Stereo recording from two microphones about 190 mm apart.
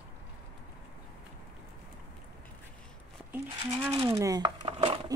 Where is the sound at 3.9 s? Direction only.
20° right (ahead or behind).